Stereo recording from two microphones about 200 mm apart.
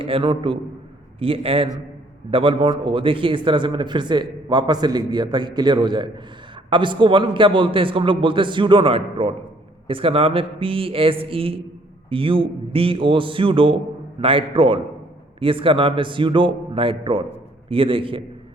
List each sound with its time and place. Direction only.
0.0 s a man's voice: 25° right (ahead or behind)